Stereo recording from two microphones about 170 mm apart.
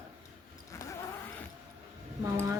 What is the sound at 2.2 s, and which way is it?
Speech, 15° right (ahead or behind).